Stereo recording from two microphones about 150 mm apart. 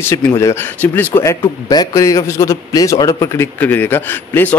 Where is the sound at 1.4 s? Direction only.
25° left (ahead or behind).